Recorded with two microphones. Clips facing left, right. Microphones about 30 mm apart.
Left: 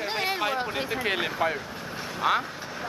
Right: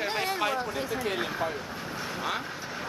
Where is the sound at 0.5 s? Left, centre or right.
Left.